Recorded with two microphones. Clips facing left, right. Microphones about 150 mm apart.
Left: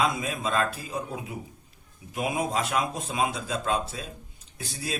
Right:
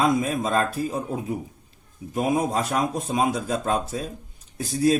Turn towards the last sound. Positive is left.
turn(degrees=-40)  # may be behind; listen again after turning